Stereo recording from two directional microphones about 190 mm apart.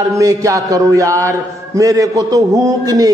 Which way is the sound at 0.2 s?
15° right (ahead or behind).